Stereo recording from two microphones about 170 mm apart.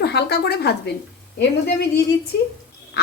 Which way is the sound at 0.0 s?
75° left (ahead or behind).